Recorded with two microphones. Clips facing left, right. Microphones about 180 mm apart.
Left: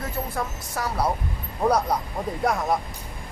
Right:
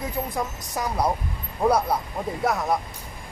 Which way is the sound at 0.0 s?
15° right (ahead or behind).